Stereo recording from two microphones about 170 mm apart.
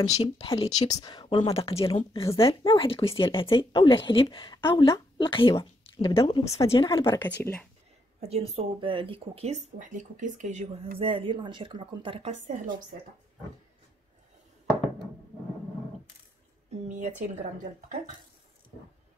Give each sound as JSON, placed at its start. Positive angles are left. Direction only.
{"t": 0.1, "sound": "speech", "side_deg": 35}
{"t": 0.9, "sound": "speech", "side_deg": 25}
{"t": 6.7, "sound": "speech", "side_deg": 15}
{"t": 8.2, "sound": "speech", "side_deg": -35}
{"t": 12.3, "sound": "speech", "side_deg": -45}
{"t": 16.8, "sound": "speech", "side_deg": -45}